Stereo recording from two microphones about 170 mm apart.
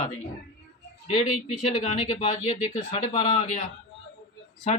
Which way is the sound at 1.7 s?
40° left (ahead or behind).